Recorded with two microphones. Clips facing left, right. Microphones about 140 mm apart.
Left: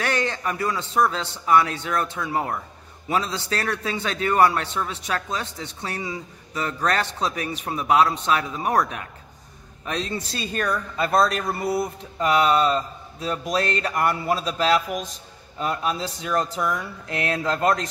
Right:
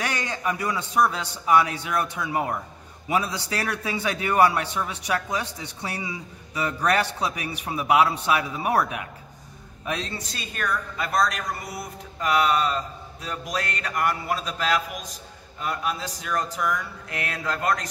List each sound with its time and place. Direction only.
0.0 s a man's voice: 15° right (ahead or behind)
10.1 s a woman's voice: 35° left (ahead or behind)